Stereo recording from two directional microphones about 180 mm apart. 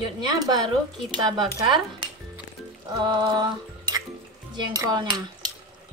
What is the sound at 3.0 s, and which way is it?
Music, 25° right (ahead or behind).